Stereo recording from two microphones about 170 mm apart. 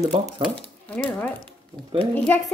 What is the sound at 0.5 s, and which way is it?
A child's voice, 5° left (ahead or behind).